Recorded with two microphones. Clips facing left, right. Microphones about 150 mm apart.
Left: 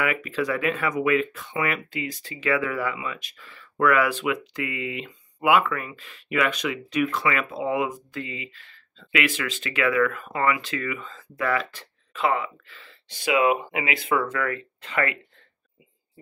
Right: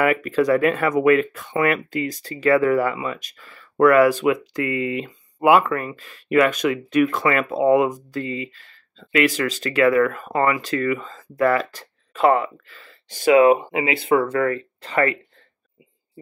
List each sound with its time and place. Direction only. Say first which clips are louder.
0.0 s speech: right 7 dB; 45° right (ahead or behind)
13.6 s speech: right 5 dB; 30° right (ahead or behind)